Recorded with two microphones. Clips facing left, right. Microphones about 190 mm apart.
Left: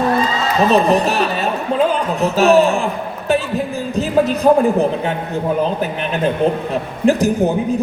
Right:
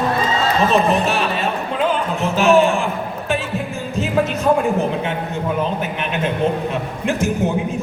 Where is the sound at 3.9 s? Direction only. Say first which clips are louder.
Left 3 dB; 35° left (ahead or behind).